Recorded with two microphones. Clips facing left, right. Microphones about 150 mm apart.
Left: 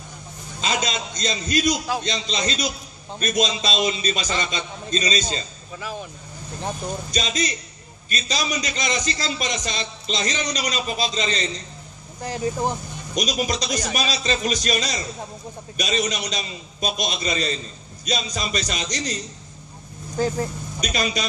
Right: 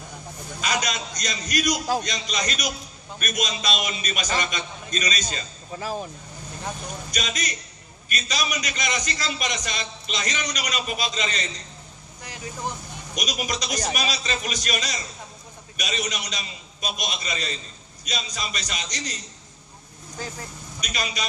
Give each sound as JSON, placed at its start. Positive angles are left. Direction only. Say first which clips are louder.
{"t": 0.6, "sound": "a man's voice", "louder": "left 2 dB", "side_deg": 25}
{"t": 5.8, "sound": "speech", "louder": "right 2 dB", "side_deg": -40}
{"t": 6.6, "sound": "a man's voice", "louder": "left 5 dB", "side_deg": 30}
{"t": 20.2, "sound": "speech", "louder": "left 12 dB", "side_deg": 35}